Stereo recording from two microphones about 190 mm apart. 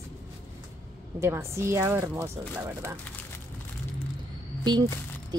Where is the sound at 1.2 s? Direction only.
15° right (ahead or behind).